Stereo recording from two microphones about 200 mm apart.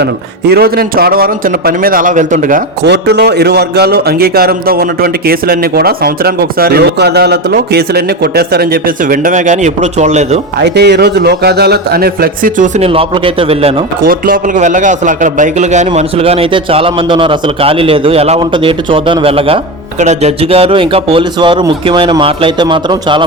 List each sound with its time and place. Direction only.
0.0 s a man's voice: 55° right (ahead or behind)
2.8 s a man's voice: 55° right (ahead or behind); by 10.4 s 35° right (ahead or behind)
10.6 s a man's voice: 55° right (ahead or behind); by 13.7 s 30° right (ahead or behind)
14.0 s a man's voice: 45° right (ahead or behind); by 23.2 s 25° right (ahead or behind)